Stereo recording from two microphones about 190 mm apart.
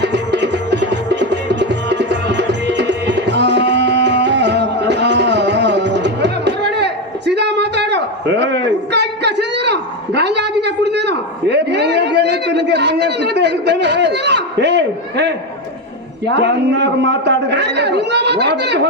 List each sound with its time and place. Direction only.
0.0 s music: 65° right (ahead or behind)
16.2 s a man's voice: 65° right (ahead or behind)